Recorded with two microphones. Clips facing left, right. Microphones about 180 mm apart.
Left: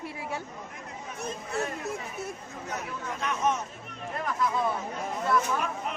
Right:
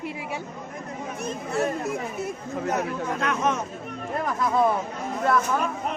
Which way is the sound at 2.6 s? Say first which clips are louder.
Right 9 dB; 85° right.